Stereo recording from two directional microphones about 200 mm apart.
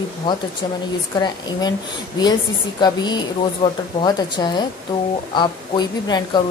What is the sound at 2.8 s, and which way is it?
A woman's voice, 20° left (ahead or behind).